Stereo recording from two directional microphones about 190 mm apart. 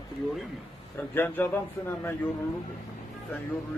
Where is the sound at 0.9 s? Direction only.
10° left (ahead or behind).